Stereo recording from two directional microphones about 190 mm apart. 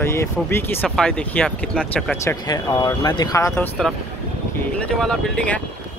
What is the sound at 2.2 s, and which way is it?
Speech, 20° left (ahead or behind).